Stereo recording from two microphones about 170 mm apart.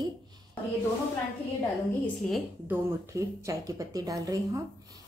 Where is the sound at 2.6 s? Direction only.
15° right (ahead or behind).